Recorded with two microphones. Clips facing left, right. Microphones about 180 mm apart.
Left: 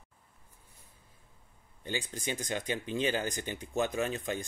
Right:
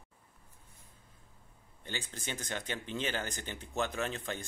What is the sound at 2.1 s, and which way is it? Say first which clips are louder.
Speech: left 5 dB; 15° left (ahead or behind).